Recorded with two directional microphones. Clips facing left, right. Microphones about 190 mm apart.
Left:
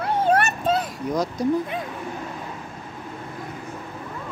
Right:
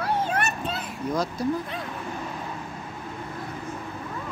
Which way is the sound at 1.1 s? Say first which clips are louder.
Left 2 dB; 15° left (ahead or behind).